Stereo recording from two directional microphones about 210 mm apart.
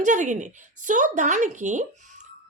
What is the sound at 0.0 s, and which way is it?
Speech, 35° right (ahead or behind).